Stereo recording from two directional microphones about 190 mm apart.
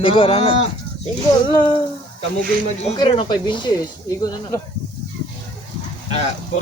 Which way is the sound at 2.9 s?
25° left (ahead or behind).